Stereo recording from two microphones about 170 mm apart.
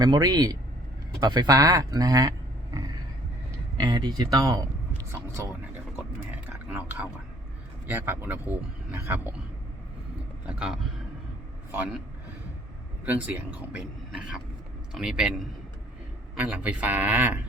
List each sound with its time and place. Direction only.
0.0 s speech: 25° right (ahead or behind)
3.8 s speech: 25° right (ahead or behind)
6.3 s a sound: 10° right (ahead or behind)
7.9 s speech: 10° right (ahead or behind)
10.4 s speech: 5° right (ahead or behind)
13.1 s speech: 10° right (ahead or behind)
16.3 s speech: 10° right (ahead or behind)